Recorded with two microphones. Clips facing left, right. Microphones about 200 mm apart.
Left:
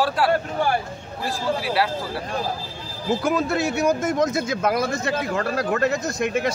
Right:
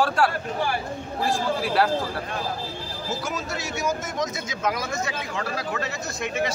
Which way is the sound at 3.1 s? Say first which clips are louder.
Left 9 dB; 55° left (ahead or behind).